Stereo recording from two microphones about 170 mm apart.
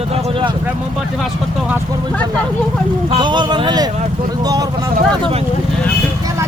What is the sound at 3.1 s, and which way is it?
Speech, 25° right (ahead or behind).